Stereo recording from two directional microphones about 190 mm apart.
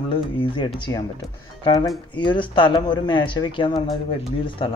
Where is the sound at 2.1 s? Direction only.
25° left (ahead or behind).